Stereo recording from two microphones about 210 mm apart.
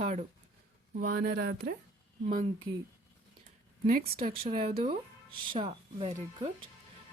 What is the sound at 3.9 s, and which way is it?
Speech, 40° right (ahead or behind).